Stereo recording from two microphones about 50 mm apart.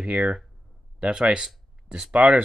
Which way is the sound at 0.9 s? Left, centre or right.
Centre.